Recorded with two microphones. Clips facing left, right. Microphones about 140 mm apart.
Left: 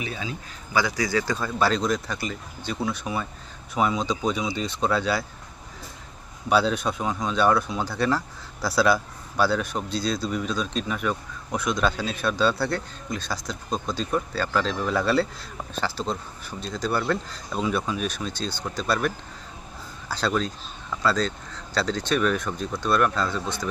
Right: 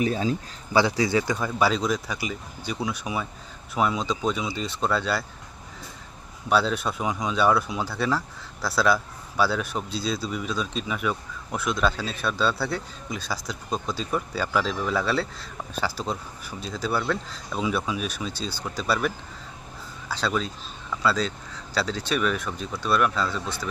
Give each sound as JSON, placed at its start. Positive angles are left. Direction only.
{"t": 0.0, "sound": "speech", "side_deg": -40}
{"t": 1.5, "sound": "speech", "side_deg": -10}
{"t": 6.5, "sound": "speech", "side_deg": 0}